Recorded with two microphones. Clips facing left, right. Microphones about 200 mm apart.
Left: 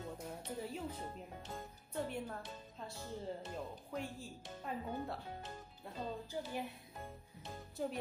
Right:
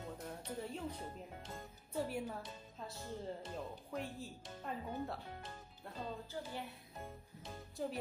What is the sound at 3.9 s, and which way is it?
Speech, centre (ahead or behind).